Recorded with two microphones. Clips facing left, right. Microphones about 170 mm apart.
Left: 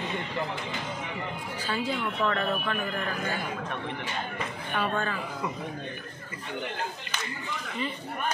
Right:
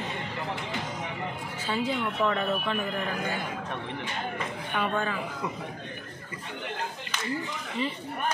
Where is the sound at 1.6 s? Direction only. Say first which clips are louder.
Right 2 dB; 20° right (ahead or behind).